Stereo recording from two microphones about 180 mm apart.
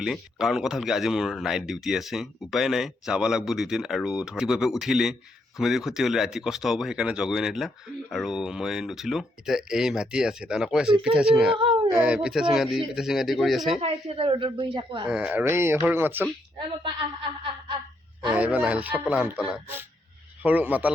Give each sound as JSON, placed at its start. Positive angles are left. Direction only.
{"t": 0.0, "sound": "speech", "side_deg": 0}
{"t": 11.5, "sound": "a sound", "side_deg": -30}
{"t": 11.9, "sound": "speech", "side_deg": -5}
{"t": 13.8, "sound": "a woman's voice", "side_deg": -30}
{"t": 15.1, "sound": "speech", "side_deg": -5}
{"t": 18.3, "sound": "speech", "side_deg": -5}